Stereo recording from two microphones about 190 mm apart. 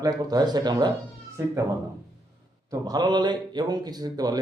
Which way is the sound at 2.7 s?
20° right (ahead or behind).